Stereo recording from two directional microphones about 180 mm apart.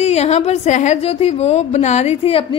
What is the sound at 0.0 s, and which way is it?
A woman's voice, 35° left (ahead or behind).